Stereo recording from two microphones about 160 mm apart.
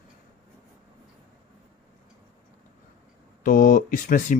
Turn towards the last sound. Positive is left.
turn(degrees=55)  # may be behind; listen again after turning